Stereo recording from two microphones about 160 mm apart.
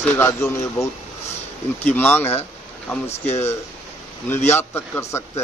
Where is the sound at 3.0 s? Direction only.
40° left (ahead or behind).